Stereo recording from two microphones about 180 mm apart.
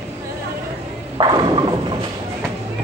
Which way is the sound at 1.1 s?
25° right (ahead or behind).